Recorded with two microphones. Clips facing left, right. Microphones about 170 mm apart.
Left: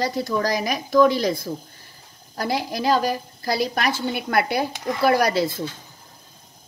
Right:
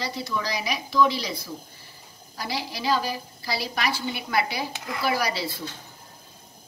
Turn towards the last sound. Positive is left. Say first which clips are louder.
# left 8 dB
turn(degrees=50)  # may be behind; listen again after turning